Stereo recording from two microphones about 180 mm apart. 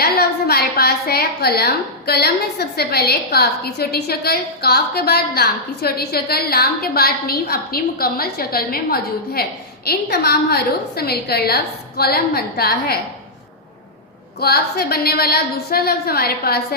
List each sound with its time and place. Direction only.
0.0 s a woman's voice: 60° left (ahead or behind)
14.4 s a woman's voice: 60° left (ahead or behind)